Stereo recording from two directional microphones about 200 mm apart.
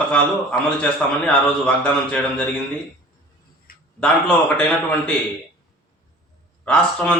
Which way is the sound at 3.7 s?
45° left (ahead or behind).